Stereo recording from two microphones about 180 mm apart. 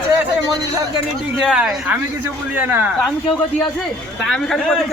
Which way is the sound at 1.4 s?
5° right (ahead or behind).